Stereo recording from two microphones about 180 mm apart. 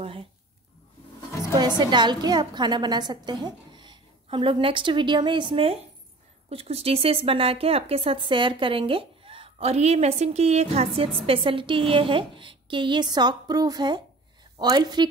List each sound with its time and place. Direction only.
0.0 s speech: 30° right (ahead or behind)
1.8 s a woman's voice: 25° right (ahead or behind)